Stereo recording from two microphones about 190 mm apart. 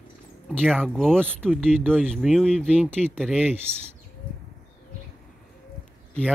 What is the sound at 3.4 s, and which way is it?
Speech, 10° right (ahead or behind).